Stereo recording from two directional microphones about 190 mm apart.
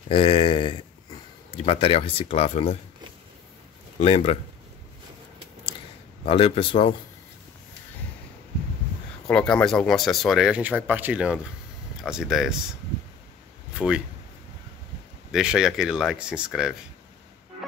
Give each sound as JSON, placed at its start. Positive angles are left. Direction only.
{"t": 0.1, "sound": "a sound", "side_deg": 30}
{"t": 4.0, "sound": "speech", "side_deg": 35}
{"t": 6.2, "sound": "a man's voice", "side_deg": 30}
{"t": 9.3, "sound": "speech", "side_deg": 5}
{"t": 13.7, "sound": "speech", "side_deg": -5}
{"t": 15.3, "sound": "speech", "side_deg": -5}